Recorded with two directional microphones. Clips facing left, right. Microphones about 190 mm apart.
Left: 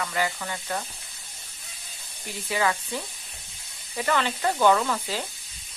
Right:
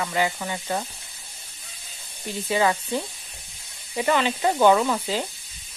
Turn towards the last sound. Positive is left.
turn(degrees=-20)  # may be behind; listen again after turning